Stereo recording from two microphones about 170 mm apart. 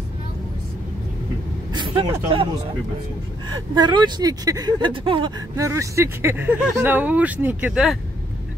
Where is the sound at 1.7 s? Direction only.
25° right (ahead or behind).